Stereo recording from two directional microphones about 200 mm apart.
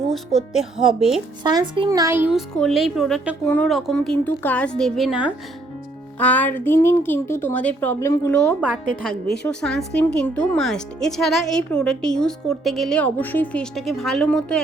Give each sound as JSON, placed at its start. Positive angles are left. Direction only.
{"t": 0.1, "sound": "speech", "side_deg": 0}
{"t": 1.5, "sound": "a child's voice", "side_deg": -25}
{"t": 6.1, "sound": "speech", "side_deg": 10}